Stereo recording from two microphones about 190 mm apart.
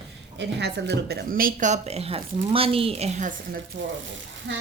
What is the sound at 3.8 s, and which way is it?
Speech, 75° right (ahead or behind).